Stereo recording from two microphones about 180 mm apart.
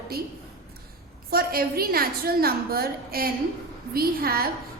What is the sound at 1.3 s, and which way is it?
A woman's voice, 55° right (ahead or behind).